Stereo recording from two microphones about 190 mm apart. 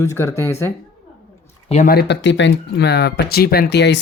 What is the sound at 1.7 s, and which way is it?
Speech, 40° left (ahead or behind).